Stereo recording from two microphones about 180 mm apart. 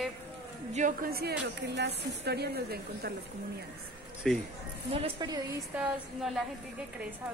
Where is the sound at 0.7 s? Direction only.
50° right (ahead or behind).